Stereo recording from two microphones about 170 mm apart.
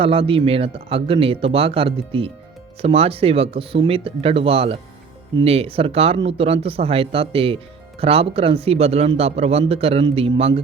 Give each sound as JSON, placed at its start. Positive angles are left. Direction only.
{"t": 0.0, "sound": "a man's voice", "side_deg": -35}